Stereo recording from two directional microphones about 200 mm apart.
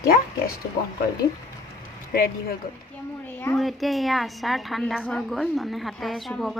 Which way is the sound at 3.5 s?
Centre (ahead or behind).